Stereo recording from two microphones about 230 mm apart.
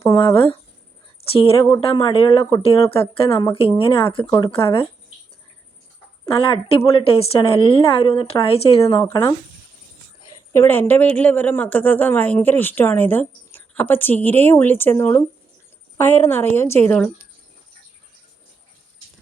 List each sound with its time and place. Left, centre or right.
0.0 s a woman's voice: centre
6.2 s a woman's voice: left
8.8 s speech: centre
10.5 s speech: centre